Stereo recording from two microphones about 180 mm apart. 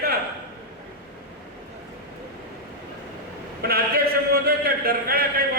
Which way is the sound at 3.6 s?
60° right (ahead or behind).